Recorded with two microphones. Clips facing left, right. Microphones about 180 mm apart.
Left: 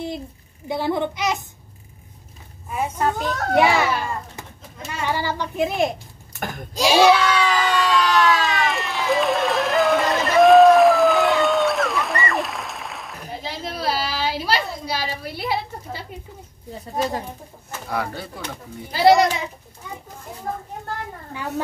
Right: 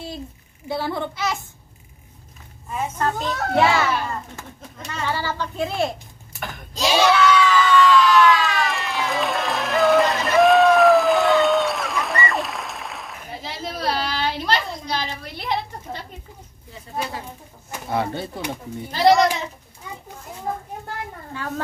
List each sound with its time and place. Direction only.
0.7 s a child's voice: 15° left (ahead or behind)
2.7 s a child's voice: 10° left (ahead or behind)
7.2 s a sound: 35° left (ahead or behind)
8.7 s applause: centre (ahead or behind)
17.8 s speech: 25° right (ahead or behind)
18.9 s a child's voice: 10° left (ahead or behind)
21.3 s a child's voice: 15° left (ahead or behind)